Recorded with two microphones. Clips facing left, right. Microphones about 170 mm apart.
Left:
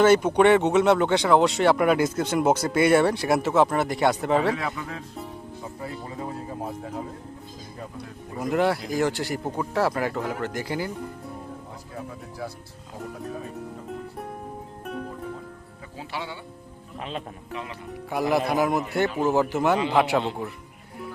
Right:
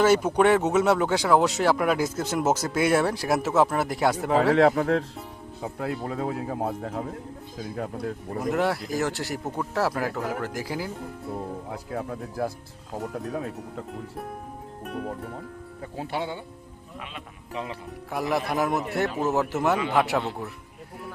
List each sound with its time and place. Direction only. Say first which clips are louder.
0.0 s speech: left 2 dB; 5° right (ahead or behind)
4.5 s speech: right 12 dB; 75° right (ahead or behind)
8.4 s speech: left 2 dB; centre (ahead or behind)
11.7 s speech: right 6 dB; 65° right (ahead or behind)
13.3 s speech: right 3 dB; 85° right
16.0 s speech: right 4 dB; 50° right (ahead or behind)
17.0 s speech: left 8 dB; 35° left (ahead or behind)
17.5 s speech: right 2 dB; 30° right (ahead or behind)
18.1 s speech: left 3 dB; centre (ahead or behind)